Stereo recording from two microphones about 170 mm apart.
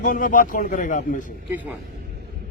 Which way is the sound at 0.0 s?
50° left (ahead or behind).